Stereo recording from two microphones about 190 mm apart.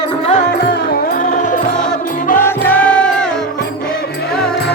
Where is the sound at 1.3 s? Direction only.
45° left (ahead or behind).